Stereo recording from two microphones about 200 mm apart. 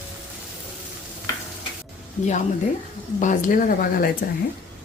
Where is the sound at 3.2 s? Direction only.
40° left (ahead or behind).